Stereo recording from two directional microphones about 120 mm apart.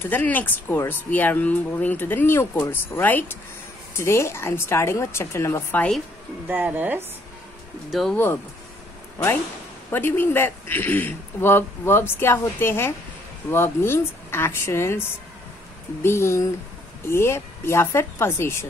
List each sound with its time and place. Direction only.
0.0 s speech: 15° left (ahead or behind)
6.4 s speech: 15° right (ahead or behind)
7.9 s speech: centre (ahead or behind)
9.8 s speech: 15° left (ahead or behind)
16.0 s speech: 20° left (ahead or behind)